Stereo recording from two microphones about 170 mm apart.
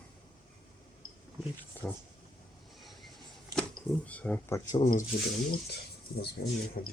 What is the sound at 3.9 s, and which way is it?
Speech, 5° left (ahead or behind).